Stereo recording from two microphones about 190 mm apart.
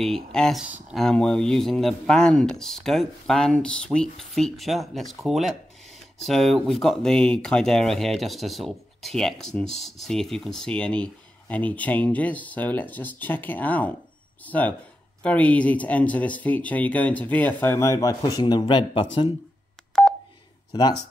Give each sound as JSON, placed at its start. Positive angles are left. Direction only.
{"t": 0.0, "sound": "speech", "side_deg": 5}
{"t": 19.9, "sound": "telephone dialing", "side_deg": 5}